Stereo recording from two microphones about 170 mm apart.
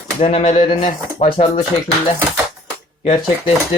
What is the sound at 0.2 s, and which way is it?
Speech, 35° left (ahead or behind).